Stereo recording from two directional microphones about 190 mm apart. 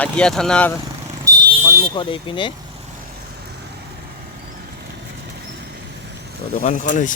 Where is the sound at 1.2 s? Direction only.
20° right (ahead or behind).